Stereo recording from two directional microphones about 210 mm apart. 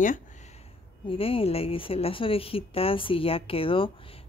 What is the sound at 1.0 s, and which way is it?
Speech, 25° left (ahead or behind).